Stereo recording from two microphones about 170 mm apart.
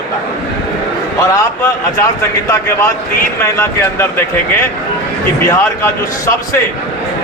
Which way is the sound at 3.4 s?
15° left (ahead or behind).